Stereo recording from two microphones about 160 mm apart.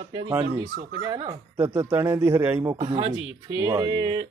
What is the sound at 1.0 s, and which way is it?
Speech, 25° right (ahead or behind).